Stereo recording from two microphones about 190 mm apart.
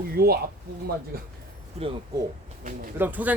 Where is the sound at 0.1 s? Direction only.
55° right (ahead or behind).